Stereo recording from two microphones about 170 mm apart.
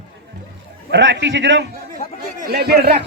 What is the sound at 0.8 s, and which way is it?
Speech, 90° right.